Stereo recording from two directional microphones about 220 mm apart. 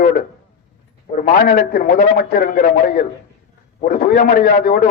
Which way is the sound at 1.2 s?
40° left (ahead or behind).